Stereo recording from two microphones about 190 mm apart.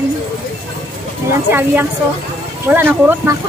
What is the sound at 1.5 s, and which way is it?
A woman's voice, 10° right (ahead or behind).